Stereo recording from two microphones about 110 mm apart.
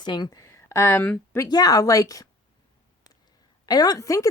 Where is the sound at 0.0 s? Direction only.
45° left (ahead or behind).